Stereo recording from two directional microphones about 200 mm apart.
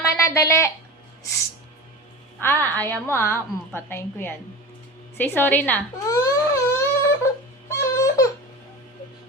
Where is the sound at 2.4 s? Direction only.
10° left (ahead or behind).